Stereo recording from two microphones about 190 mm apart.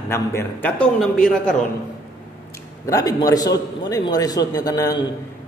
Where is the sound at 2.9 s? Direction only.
20° left (ahead or behind).